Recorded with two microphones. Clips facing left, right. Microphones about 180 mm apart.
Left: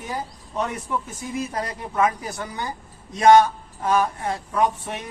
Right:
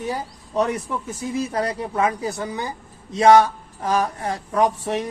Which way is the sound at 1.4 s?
30° right (ahead or behind).